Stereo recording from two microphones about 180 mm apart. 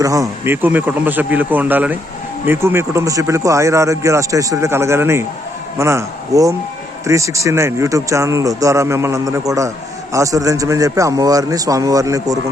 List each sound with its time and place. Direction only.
0.0 s speech: 20° right (ahead or behind)